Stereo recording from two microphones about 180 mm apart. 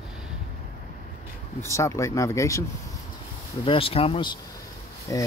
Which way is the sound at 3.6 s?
30° left (ahead or behind).